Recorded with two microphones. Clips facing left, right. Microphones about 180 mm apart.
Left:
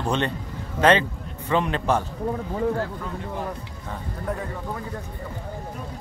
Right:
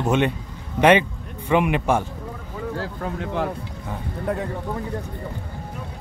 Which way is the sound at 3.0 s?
85° right.